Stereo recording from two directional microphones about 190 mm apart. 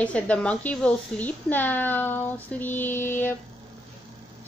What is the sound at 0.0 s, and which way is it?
Speech, 5° left (ahead or behind).